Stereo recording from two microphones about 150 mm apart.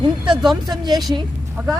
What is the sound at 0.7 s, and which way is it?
Speech, 25° right (ahead or behind).